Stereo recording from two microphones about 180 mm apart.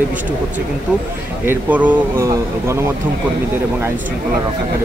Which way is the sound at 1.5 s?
10° right (ahead or behind).